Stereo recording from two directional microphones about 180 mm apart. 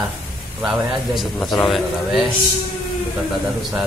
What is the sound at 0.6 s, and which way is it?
A man's voice, centre (ahead or behind).